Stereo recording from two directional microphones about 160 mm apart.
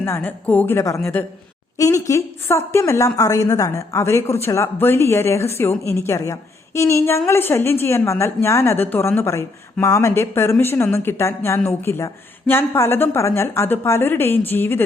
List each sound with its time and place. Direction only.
0.0 s a woman's voice: 15° left (ahead or behind)